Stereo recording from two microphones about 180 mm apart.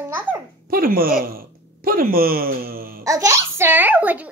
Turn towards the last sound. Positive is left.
turn(degrees=-10)  # may be behind; listen again after turning